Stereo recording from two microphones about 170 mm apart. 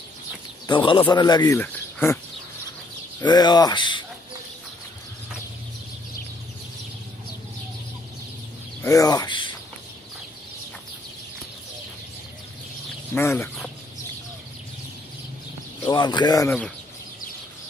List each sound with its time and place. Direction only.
0.7 s speech: 30° left (ahead or behind)
1.6 s cricket: 10° left (ahead or behind)
3.3 s speech: 25° left (ahead or behind)
8.8 s speech: 20° left (ahead or behind)
13.1 s speech: 15° left (ahead or behind)
15.8 s speech: 25° left (ahead or behind)